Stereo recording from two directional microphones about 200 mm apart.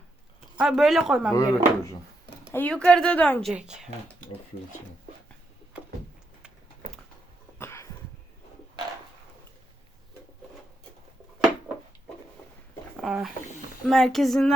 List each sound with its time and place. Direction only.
0.6 s speech: centre (ahead or behind)
1.3 s a woman's voice: 15° left (ahead or behind)
3.5 s speech: 5° right (ahead or behind)
7.6 s a sound: 15° left (ahead or behind)
13.0 s speech: centre (ahead or behind)